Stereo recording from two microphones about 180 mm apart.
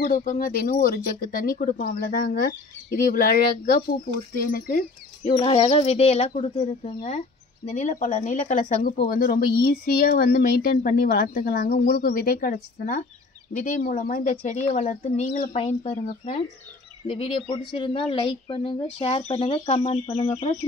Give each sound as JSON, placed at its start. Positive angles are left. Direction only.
{"t": 0.0, "sound": "speech", "side_deg": 50}
{"t": 5.3, "sound": "speech", "side_deg": 30}
{"t": 17.1, "sound": "speech", "side_deg": 30}